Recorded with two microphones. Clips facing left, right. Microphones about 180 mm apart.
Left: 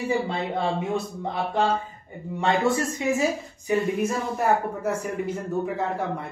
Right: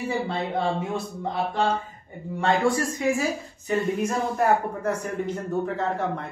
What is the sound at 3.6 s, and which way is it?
Speech, 10° left (ahead or behind).